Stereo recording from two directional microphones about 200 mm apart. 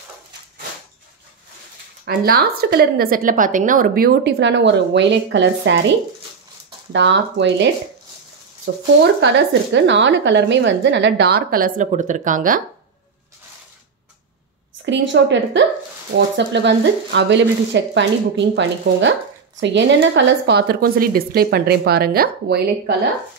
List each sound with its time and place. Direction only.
2.0 s a woman's voice: 50° right (ahead or behind)
6.9 s speech: 65° right (ahead or behind); by 12.6 s 40° right (ahead or behind)
14.9 s a woman's voice: 65° right (ahead or behind)